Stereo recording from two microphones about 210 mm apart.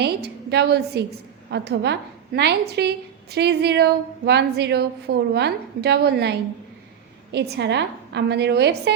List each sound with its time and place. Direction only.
0.0 s a woman's voice: 50° right (ahead or behind)
7.3 s a woman's voice: 55° right (ahead or behind)